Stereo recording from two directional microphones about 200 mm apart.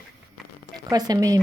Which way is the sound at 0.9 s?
20° right (ahead or behind).